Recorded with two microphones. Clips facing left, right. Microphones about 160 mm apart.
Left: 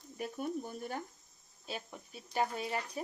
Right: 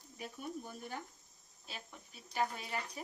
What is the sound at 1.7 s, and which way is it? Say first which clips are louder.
Speech: left 8 dB; 40° left (ahead or behind).